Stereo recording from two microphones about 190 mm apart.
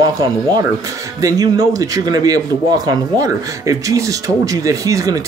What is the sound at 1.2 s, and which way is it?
Speech, 20° right (ahead or behind).